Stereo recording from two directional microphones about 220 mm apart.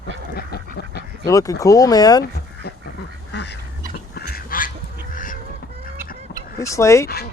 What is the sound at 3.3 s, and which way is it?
Goose, 50° left (ahead or behind).